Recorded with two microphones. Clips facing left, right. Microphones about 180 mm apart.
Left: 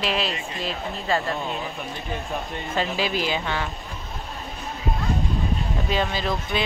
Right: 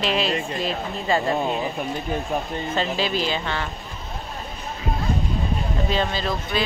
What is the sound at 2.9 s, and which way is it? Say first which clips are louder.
Speech: right 1 dB; 10° left (ahead or behind).